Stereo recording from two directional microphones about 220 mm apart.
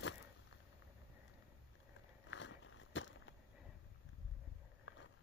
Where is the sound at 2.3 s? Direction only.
60° left (ahead or behind).